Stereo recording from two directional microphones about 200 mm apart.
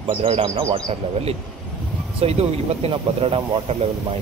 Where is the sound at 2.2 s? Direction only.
30° right (ahead or behind).